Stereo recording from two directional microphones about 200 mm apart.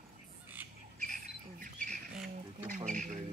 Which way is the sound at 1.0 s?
40° right (ahead or behind).